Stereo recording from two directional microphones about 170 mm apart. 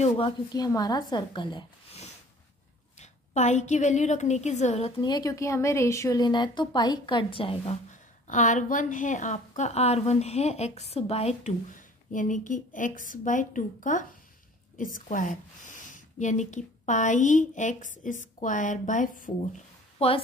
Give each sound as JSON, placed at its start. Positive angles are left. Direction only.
{"t": 0.5, "sound": "a woman's voice", "side_deg": 20}
{"t": 3.0, "sound": "a woman's voice", "side_deg": 45}
{"t": 7.9, "sound": "a woman's voice", "side_deg": 45}
{"t": 12.1, "sound": "a woman's voice", "side_deg": 50}
{"t": 20.0, "sound": "a woman's voice", "side_deg": 35}